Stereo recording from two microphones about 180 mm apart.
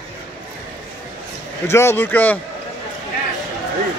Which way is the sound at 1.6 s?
15° left (ahead or behind).